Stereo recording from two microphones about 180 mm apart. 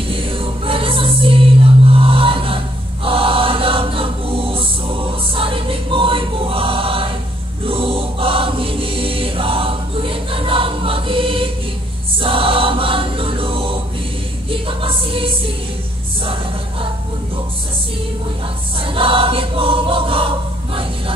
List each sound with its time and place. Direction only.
0.1 s music: 30° right (ahead or behind)
3.1 s choir: 30° right (ahead or behind)
14.5 s music: 30° right (ahead or behind)
18.9 s choir: 30° right (ahead or behind)